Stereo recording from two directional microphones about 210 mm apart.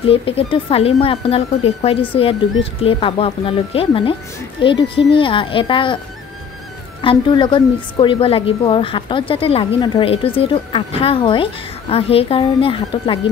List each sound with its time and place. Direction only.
0.0 s a woman's voice: 25° left (ahead or behind)
7.0 s a woman's voice: 25° left (ahead or behind)